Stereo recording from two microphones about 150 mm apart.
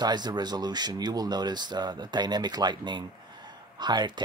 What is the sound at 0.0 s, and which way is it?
Speech, 30° right (ahead or behind).